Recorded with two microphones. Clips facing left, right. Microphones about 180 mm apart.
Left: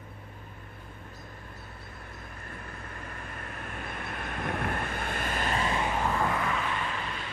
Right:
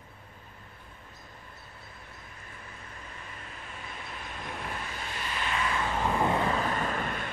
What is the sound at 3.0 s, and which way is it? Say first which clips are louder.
Vehicle: left 4 dB; 60° left (ahead or behind).